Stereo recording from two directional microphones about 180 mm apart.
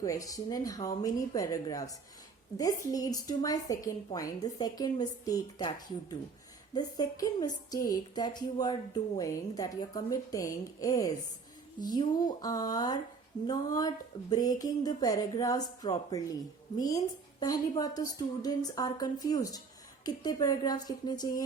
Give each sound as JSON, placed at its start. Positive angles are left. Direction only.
{"t": 0.0, "sound": "a woman's voice", "side_deg": 20}